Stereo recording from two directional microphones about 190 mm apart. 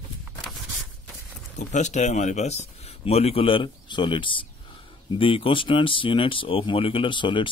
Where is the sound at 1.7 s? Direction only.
40° left (ahead or behind).